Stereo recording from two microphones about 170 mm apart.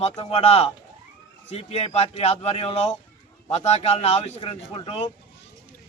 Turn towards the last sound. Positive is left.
turn(degrees=35)  # may be behind; listen again after turning